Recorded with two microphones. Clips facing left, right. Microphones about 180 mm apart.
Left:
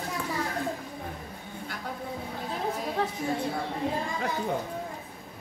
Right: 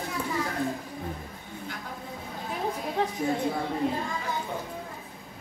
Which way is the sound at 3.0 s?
20° right (ahead or behind).